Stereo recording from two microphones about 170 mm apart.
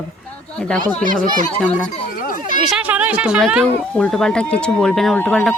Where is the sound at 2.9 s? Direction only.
10° right (ahead or behind).